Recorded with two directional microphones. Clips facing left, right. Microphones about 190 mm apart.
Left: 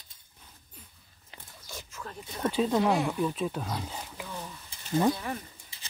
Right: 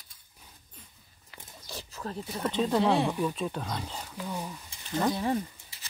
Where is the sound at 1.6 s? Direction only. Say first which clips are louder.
Right 4 dB; 35° right (ahead or behind).